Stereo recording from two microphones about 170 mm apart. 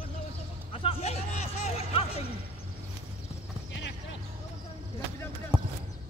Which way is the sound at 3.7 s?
90° left.